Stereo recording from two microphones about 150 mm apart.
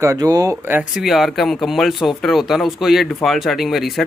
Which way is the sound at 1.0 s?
Centre (ahead or behind).